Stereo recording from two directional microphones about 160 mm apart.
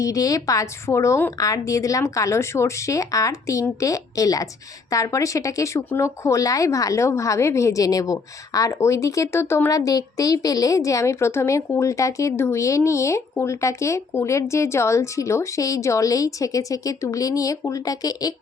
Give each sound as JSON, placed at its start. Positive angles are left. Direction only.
{"t": 0.0, "sound": "a woman's voice", "side_deg": 20}